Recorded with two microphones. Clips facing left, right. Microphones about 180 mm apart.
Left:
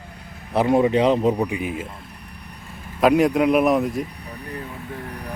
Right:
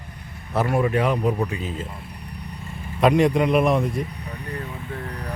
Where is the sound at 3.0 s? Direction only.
Centre (ahead or behind).